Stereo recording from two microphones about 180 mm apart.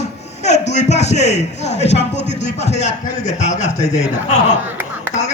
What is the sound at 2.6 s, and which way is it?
A man's voice, 40° left (ahead or behind).